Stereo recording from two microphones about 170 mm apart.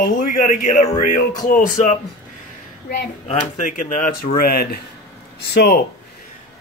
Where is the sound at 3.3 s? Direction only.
45° left (ahead or behind); by 5.8 s 65° left (ahead or behind).